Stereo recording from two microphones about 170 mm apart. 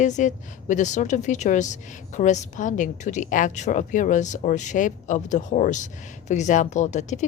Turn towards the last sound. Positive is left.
turn(degrees=45)  # may be behind; listen again after turning